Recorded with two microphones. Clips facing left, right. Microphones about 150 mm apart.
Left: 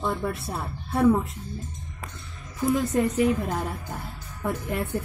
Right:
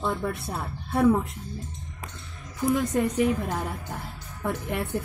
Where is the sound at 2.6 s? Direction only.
5° left (ahead or behind).